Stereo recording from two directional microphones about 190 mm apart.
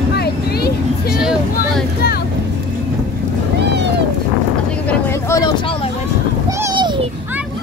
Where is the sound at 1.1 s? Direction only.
5° right (ahead or behind).